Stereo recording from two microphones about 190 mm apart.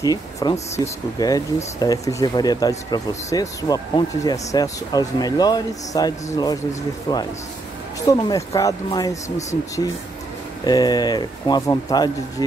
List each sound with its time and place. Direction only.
0.0 s speech: 20° left (ahead or behind)
10.6 s speech: 20° left (ahead or behind)